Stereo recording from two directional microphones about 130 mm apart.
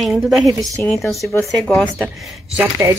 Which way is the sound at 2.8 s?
25° right (ahead or behind).